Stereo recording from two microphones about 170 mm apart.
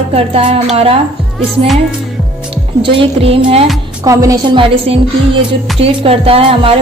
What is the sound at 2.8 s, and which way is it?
Speech, 35° right (ahead or behind).